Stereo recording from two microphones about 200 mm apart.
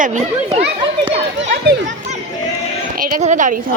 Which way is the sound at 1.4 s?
55° right (ahead or behind).